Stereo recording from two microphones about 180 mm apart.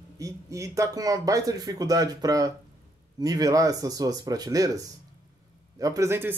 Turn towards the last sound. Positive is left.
turn(degrees=-10)  # may be behind; listen again after turning